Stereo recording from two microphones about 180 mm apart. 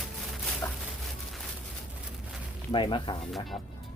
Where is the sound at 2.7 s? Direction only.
25° left (ahead or behind).